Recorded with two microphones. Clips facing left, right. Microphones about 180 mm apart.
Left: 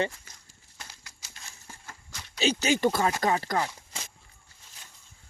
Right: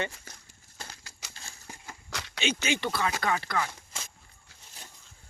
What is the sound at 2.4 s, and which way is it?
Speech, 35° left (ahead or behind).